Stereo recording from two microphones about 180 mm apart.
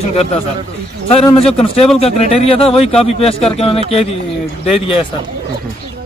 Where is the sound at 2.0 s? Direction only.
35° left (ahead or behind).